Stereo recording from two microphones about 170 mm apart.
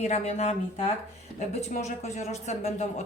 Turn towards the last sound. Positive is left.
turn(degrees=40)  # may be behind; listen again after turning